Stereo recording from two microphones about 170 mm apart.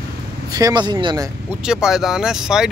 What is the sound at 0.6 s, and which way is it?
Speech, 25° right (ahead or behind).